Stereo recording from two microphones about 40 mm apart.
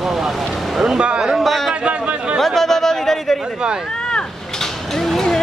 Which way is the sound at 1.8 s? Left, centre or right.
Right.